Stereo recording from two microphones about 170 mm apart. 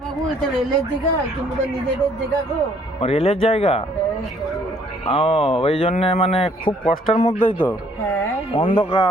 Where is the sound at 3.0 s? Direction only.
40° left (ahead or behind).